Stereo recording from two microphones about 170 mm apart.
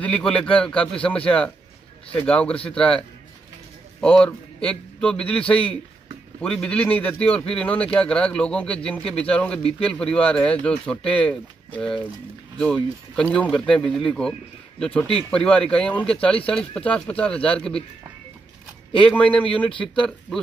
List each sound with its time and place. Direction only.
0.0 s a man's voice: 5° left (ahead or behind)
12.5 s a man's voice: 5° left (ahead or behind)
18.9 s a man's voice: 5° left (ahead or behind)